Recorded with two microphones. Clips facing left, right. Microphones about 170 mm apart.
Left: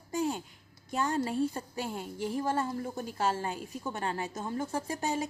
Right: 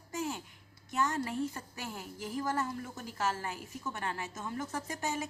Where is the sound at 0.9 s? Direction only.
30° left (ahead or behind).